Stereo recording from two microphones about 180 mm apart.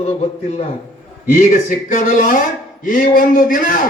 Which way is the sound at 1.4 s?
45° left (ahead or behind).